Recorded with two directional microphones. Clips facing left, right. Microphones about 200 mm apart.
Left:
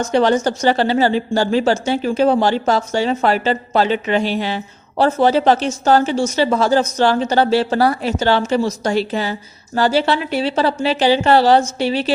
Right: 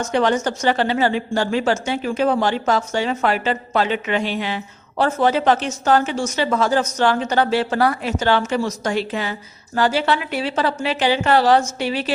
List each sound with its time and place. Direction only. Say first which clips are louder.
0.0 s a woman's voice: left 4 dB; 35° left (ahead or behind)